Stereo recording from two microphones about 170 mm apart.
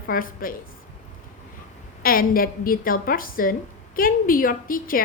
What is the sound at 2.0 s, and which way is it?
A woman's voice, 60° left (ahead or behind).